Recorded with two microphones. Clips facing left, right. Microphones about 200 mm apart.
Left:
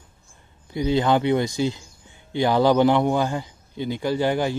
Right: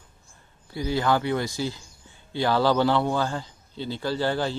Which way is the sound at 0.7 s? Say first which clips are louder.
Left 4 dB; 20° left (ahead or behind).